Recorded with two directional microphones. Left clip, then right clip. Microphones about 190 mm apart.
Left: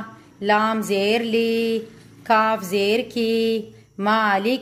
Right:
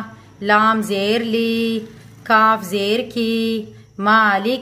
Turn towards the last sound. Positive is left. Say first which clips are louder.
# right 4 dB
turn(degrees=15)  # may be behind; listen again after turning